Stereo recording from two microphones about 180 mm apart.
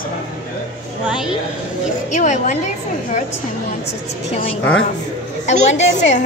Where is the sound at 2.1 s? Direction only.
45° left (ahead or behind).